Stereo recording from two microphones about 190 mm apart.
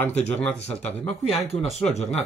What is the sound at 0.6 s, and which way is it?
Speech, 35° left (ahead or behind).